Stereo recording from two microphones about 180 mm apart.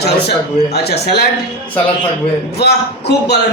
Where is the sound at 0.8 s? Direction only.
65° left (ahead or behind).